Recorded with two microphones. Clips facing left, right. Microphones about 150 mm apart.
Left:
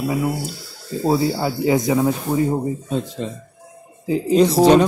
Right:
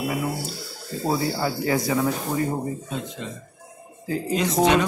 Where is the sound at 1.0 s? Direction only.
20° left (ahead or behind).